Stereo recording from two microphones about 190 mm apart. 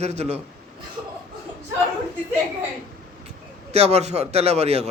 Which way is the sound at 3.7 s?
35° right (ahead or behind).